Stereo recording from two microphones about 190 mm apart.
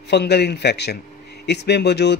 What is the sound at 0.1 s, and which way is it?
Speech, 60° left (ahead or behind).